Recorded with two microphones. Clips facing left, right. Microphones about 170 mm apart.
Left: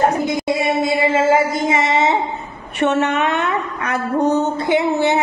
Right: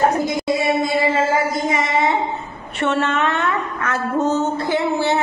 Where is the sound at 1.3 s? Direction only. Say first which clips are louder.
Left 3 dB; 25° left (ahead or behind).